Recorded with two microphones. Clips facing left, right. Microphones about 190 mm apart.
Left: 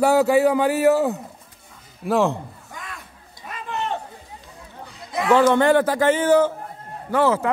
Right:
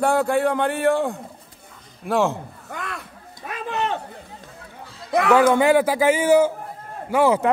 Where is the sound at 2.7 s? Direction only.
65° right (ahead or behind).